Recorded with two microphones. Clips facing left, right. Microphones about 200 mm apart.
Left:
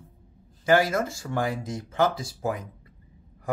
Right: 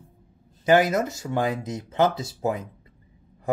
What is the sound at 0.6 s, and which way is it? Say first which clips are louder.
Speech: right 2 dB; 20° right (ahead or behind).